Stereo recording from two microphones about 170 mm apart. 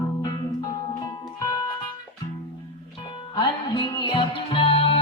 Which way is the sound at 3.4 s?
25° left (ahead or behind).